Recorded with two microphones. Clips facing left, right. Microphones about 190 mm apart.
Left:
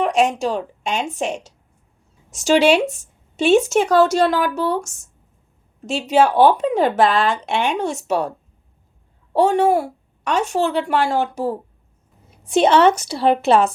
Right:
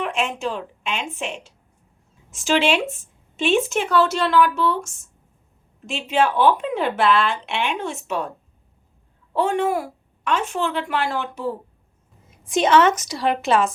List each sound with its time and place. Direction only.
0.0 s speech: 40° left (ahead or behind)
9.3 s speech: 40° left (ahead or behind)
12.5 s speech: 30° left (ahead or behind)